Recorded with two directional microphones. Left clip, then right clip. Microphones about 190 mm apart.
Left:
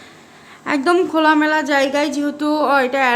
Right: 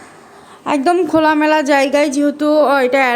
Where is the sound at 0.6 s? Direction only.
10° right (ahead or behind).